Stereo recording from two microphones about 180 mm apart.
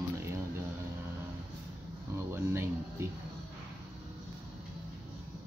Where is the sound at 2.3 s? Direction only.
15° right (ahead or behind).